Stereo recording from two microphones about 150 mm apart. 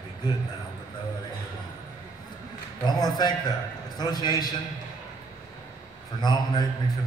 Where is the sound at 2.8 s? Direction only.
30° left (ahead or behind).